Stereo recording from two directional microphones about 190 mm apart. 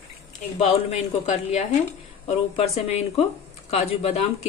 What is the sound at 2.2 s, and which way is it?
Speech, 35° left (ahead or behind).